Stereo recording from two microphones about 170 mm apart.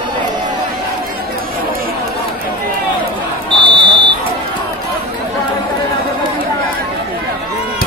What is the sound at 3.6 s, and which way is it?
Buzzer, 30° right (ahead or behind).